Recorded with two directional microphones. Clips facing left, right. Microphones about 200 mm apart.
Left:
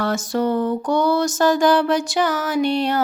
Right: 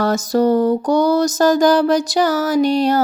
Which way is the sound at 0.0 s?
40° right (ahead or behind).